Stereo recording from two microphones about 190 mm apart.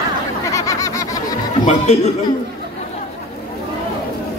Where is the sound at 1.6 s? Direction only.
35° left (ahead or behind).